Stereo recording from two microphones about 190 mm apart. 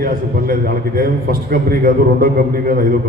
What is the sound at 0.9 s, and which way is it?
A man's voice, 50° right (ahead or behind).